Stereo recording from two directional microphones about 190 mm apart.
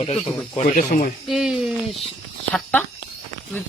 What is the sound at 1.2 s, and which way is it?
Speech, centre (ahead or behind).